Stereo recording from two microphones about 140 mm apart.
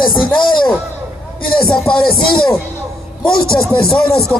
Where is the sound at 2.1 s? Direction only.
35° left (ahead or behind).